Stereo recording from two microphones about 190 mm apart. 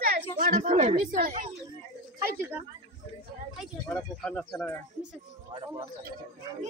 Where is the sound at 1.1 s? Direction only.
45° right (ahead or behind).